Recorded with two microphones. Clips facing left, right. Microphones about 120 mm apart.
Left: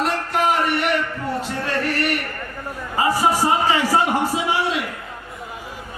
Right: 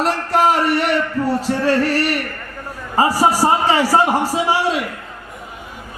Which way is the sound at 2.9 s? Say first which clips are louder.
Right 3 dB; 40° right (ahead or behind).